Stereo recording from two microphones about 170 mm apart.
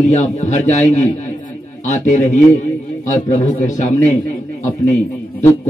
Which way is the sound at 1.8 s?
45° left (ahead or behind).